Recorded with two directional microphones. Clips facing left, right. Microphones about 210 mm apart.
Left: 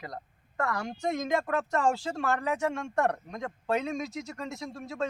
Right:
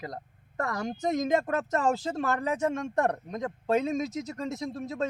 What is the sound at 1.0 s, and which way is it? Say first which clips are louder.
Speech: right 3 dB; 40° right (ahead or behind).